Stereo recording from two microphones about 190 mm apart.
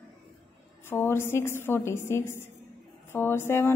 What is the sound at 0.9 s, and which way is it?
A woman's voice, 10° left (ahead or behind).